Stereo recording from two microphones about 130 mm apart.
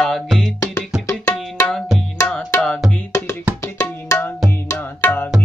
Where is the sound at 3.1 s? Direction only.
25° left (ahead or behind).